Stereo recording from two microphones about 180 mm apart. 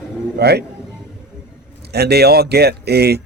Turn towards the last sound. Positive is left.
turn(degrees=-65)  # may be behind; listen again after turning